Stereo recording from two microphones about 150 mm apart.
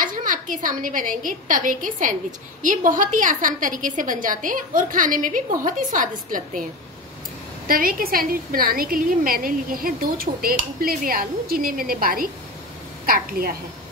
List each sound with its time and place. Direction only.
0.0 s a woman's voice: 60° right (ahead or behind)
7.6 s a woman's voice: 70° right (ahead or behind)